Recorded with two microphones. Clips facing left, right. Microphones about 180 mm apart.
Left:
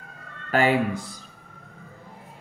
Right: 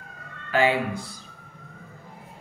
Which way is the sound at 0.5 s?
45° left (ahead or behind).